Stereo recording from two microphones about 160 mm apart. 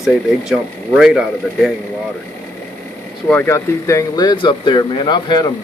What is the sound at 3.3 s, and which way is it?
Speech, 15° left (ahead or behind).